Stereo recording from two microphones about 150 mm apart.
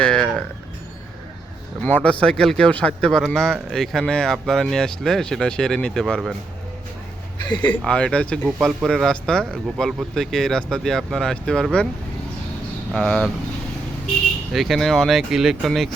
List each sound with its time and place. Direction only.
0.0 s speech: 5° left (ahead or behind)
1.8 s speech: 10° left (ahead or behind)
7.4 s speech: 30° left (ahead or behind)
7.9 s speech: 5° left (ahead or behind)
8.4 s speech: 5° right (ahead or behind)
12.9 s speech: 5° left (ahead or behind)
14.5 s speech: centre (ahead or behind)